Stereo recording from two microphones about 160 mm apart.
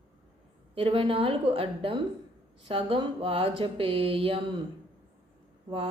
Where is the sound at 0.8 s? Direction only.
35° right (ahead or behind).